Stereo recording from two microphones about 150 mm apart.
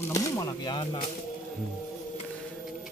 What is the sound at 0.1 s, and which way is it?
Speech, 25° left (ahead or behind).